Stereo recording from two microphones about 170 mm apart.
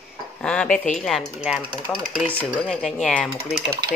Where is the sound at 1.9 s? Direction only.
5° left (ahead or behind).